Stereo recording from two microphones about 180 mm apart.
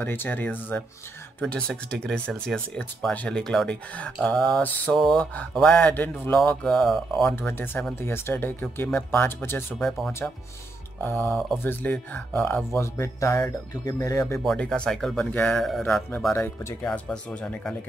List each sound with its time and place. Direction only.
0.0 s speech: 10° left (ahead or behind)
7.3 s speech: 10° left (ahead or behind)
9.8 s speech: centre (ahead or behind)
11.1 s speech: 10° left (ahead or behind)
14.4 s speech: centre (ahead or behind)
16.3 s speech: 15° left (ahead or behind)